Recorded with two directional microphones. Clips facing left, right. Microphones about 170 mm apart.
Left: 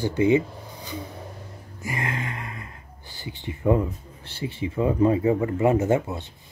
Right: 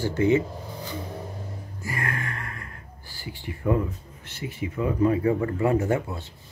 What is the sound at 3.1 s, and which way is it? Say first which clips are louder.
Speech: left 2 dB; 20° left (ahead or behind).